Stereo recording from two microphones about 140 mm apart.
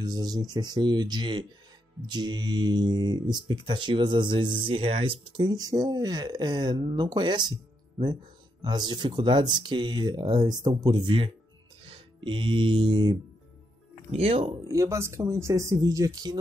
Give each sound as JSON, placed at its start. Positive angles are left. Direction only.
{"t": 0.0, "sound": "speech", "side_deg": -30}
{"t": 8.6, "sound": "speech", "side_deg": -30}
{"t": 14.1, "sound": "speech", "side_deg": -45}
{"t": 14.7, "sound": "speech", "side_deg": -20}